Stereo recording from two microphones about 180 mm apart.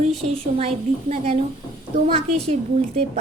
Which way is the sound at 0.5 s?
35° right (ahead or behind).